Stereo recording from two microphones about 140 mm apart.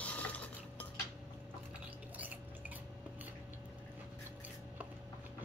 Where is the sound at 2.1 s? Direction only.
10° right (ahead or behind).